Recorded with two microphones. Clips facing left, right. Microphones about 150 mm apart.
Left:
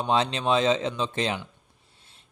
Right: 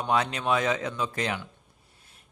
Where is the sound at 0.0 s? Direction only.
25° left (ahead or behind).